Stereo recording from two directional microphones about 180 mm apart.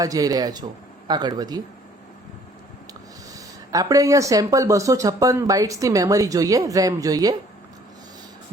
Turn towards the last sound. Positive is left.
turn(degrees=-20)  # may be behind; listen again after turning